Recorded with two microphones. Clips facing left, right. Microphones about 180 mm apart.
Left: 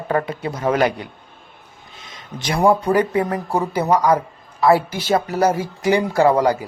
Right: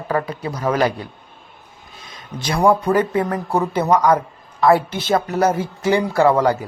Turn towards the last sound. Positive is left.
turn(degrees=15)  # may be behind; listen again after turning